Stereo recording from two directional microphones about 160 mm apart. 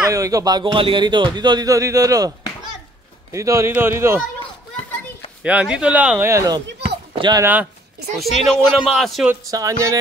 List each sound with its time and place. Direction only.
0.0 s speech: 20° right (ahead or behind)
5.4 s speech: 10° right (ahead or behind); by 7.4 s 30° right (ahead or behind)
8.2 s a man's voice: centre (ahead or behind)
9.3 s speech: 20° right (ahead or behind)